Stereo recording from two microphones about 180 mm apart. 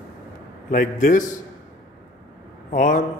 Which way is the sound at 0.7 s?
50° left (ahead or behind).